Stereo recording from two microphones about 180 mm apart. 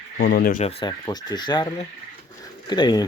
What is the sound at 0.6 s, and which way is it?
Speech, 30° left (ahead or behind).